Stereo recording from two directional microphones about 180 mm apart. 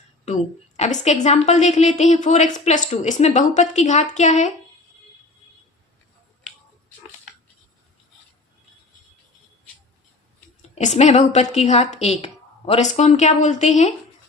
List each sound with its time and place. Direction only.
0.8 s a woman's voice: 40° left (ahead or behind)
10.8 s a woman's voice: 40° left (ahead or behind)